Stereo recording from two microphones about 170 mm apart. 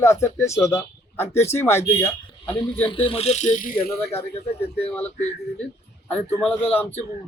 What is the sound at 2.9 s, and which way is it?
Speech, 30° left (ahead or behind).